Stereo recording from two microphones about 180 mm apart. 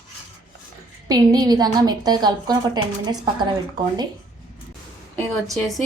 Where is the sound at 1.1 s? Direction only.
20° right (ahead or behind).